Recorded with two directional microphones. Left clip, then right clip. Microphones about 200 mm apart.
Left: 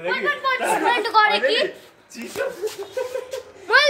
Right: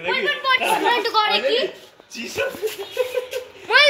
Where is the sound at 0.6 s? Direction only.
Centre (ahead or behind).